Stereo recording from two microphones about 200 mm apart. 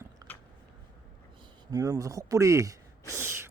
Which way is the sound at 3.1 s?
15° right (ahead or behind).